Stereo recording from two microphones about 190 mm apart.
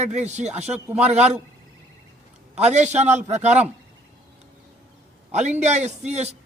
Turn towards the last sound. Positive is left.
turn(degrees=-35)  # may be behind; listen again after turning